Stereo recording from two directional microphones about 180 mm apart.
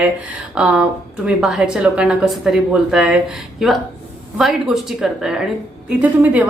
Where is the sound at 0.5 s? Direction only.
5° right (ahead or behind).